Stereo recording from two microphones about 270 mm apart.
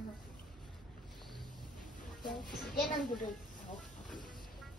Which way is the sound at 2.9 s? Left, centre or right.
Left.